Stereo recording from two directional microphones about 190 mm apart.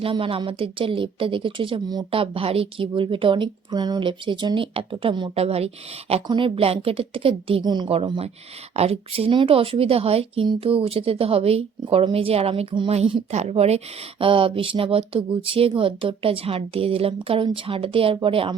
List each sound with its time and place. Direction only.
0.0 s a woman's voice: 30° right (ahead or behind)